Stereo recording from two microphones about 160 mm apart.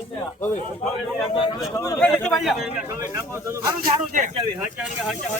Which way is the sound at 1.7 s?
20° left (ahead or behind).